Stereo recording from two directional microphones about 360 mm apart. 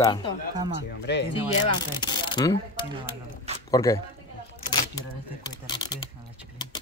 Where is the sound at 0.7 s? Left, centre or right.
Left.